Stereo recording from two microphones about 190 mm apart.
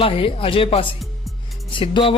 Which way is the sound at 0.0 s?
30° left (ahead or behind).